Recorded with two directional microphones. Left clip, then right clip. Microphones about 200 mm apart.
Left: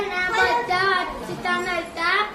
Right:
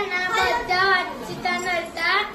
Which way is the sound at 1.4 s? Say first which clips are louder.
Even; 15° left (ahead or behind).